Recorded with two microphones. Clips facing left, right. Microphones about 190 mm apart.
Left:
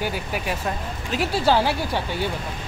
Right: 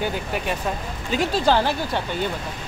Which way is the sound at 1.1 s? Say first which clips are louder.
Right 1 dB; 5° left (ahead or behind).